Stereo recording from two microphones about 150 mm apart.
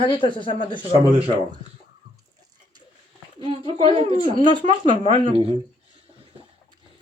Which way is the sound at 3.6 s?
30° left (ahead or behind).